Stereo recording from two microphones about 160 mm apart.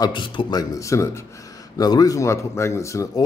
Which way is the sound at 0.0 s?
30° left (ahead or behind).